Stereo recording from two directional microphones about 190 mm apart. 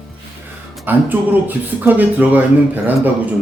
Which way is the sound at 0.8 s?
10° right (ahead or behind).